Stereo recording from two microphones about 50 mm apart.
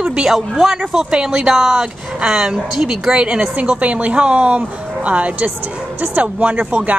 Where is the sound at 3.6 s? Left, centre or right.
Right.